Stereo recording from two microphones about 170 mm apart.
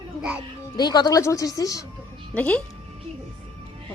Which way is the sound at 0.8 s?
25° left (ahead or behind).